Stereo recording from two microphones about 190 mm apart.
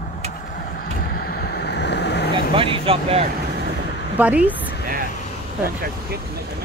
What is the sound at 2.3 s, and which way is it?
Speech, 25° right (ahead or behind).